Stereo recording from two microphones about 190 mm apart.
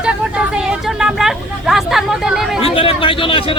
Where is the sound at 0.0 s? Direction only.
5° right (ahead or behind).